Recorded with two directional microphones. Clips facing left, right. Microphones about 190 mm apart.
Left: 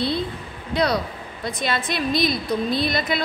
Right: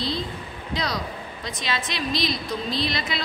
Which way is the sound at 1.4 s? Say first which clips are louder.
Left 5 dB; 55° left (ahead or behind).